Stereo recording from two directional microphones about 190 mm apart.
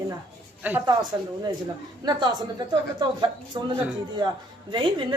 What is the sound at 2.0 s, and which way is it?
A woman's voice, 20° right (ahead or behind).